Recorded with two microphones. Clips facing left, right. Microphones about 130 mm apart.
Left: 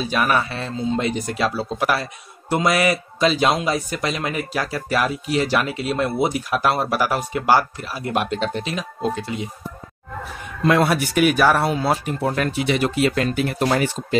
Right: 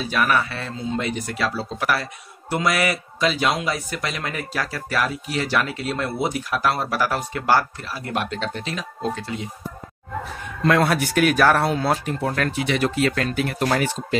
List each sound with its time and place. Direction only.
0.1 s a man's voice: 25° left (ahead or behind)
10.6 s speech: 5° left (ahead or behind)